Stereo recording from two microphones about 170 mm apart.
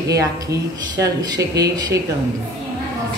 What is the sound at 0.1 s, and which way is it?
Speech, 20° right (ahead or behind).